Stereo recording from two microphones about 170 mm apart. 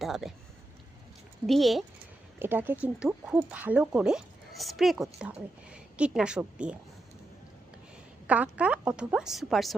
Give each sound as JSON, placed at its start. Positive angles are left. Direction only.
{"t": 0.0, "sound": "speech", "side_deg": 0}
{"t": 1.5, "sound": "speech", "side_deg": 0}
{"t": 2.4, "sound": "speech", "side_deg": -10}
{"t": 8.3, "sound": "speech", "side_deg": -10}